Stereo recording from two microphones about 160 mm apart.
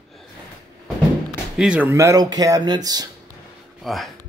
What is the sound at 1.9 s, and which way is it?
Speech, 20° right (ahead or behind).